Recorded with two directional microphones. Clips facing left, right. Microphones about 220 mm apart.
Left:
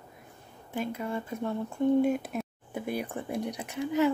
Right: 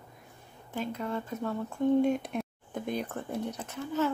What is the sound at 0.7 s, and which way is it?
Speech, 10° left (ahead or behind).